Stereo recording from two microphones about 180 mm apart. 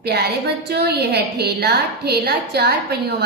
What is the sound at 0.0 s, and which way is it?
A woman's voice, 65° right (ahead or behind).